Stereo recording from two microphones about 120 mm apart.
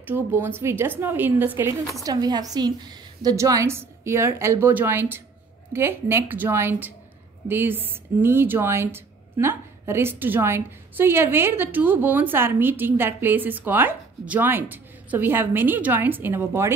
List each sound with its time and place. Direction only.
0.0 s speech: 20° right (ahead or behind)
2.0 s a woman's voice: 35° right (ahead or behind)